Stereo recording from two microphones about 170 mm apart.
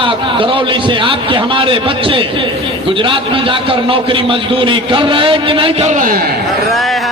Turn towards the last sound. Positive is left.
turn(degrees=0)  # may be behind; listen again after turning